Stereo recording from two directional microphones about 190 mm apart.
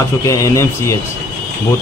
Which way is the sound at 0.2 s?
15° left (ahead or behind).